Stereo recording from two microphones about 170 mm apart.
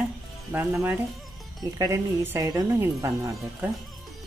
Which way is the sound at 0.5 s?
10° right (ahead or behind).